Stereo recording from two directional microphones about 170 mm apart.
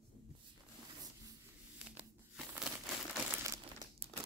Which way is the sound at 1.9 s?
10° right (ahead or behind).